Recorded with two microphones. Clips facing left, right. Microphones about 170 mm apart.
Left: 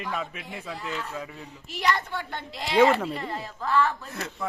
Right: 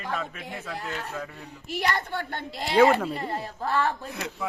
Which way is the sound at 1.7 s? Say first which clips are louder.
Left 1 dB; 55° right (ahead or behind).